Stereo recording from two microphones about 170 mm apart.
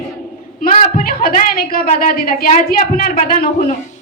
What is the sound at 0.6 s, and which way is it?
A woman's voice, 55° left (ahead or behind).